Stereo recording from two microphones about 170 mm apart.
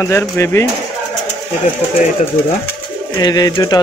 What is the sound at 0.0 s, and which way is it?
Speech, 15° left (ahead or behind).